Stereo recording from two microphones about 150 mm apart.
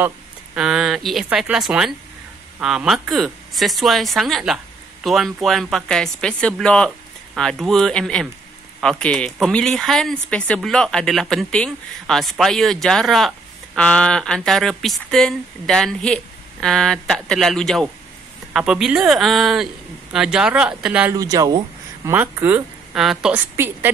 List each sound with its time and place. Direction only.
0.6 s speech: 5° right (ahead or behind)
21.1 s speech: 25° right (ahead or behind)
22.1 s speech: 10° right (ahead or behind)
23.5 s speech: 15° right (ahead or behind)